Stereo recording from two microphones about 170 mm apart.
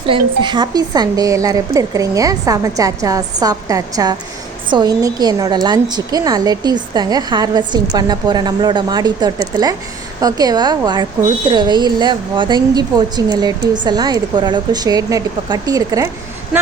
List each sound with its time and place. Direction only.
0.1 s a woman's voice: 25° right (ahead or behind)